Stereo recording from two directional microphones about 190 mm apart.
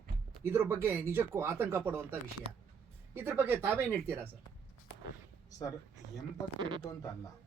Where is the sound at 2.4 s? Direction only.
30° right (ahead or behind).